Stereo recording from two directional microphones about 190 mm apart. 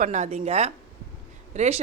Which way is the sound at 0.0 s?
40° right (ahead or behind).